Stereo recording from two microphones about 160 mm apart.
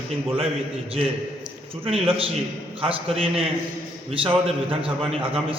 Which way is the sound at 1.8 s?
35° right (ahead or behind).